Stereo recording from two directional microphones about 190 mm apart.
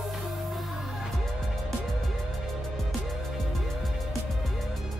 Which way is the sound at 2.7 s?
Centre (ahead or behind).